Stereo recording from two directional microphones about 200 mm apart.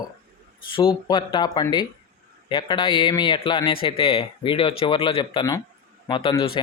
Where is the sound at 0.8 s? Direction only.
25° left (ahead or behind).